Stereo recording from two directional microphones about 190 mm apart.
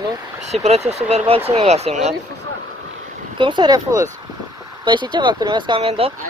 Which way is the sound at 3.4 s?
25° right (ahead or behind).